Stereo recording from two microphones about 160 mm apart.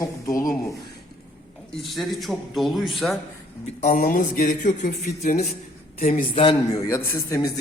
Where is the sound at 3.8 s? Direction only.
55° left (ahead or behind).